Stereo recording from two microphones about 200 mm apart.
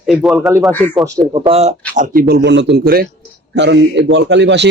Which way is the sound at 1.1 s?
15° right (ahead or behind).